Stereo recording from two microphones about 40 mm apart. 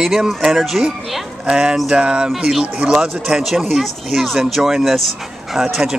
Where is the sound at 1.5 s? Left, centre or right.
Right.